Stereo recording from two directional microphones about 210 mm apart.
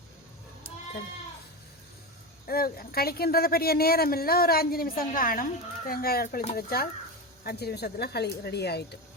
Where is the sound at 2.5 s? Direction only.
45° left (ahead or behind).